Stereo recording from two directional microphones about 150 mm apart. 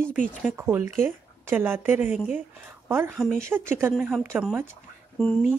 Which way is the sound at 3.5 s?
15° right (ahead or behind).